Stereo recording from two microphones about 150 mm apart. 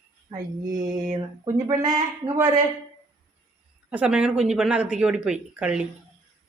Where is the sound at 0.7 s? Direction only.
25° right (ahead or behind).